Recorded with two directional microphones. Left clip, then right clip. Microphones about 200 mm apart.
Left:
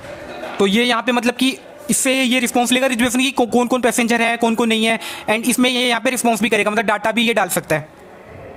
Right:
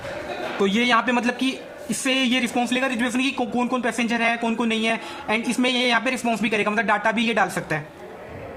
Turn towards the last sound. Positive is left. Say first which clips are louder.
# left 5 dB
turn(degrees=50)  # may be behind; listen again after turning